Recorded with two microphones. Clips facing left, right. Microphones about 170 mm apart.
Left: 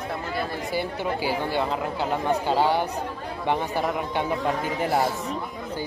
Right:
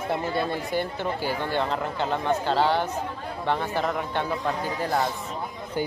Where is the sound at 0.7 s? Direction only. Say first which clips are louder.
Even; 10° left (ahead or behind).